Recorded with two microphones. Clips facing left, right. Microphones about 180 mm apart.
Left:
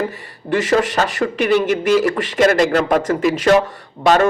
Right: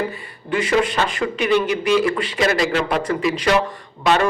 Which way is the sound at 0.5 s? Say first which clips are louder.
Left 3 dB; 40° left (ahead or behind).